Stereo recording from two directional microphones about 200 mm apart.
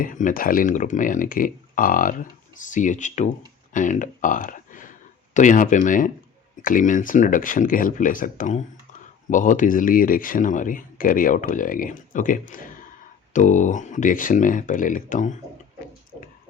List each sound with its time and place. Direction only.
0.0 s speech: 40° left (ahead or behind)